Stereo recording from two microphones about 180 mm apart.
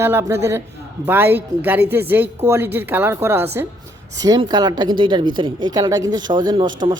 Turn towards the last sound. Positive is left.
turn(degrees=-25)  # may be behind; listen again after turning